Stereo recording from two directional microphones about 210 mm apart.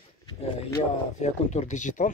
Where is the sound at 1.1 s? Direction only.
35° left (ahead or behind).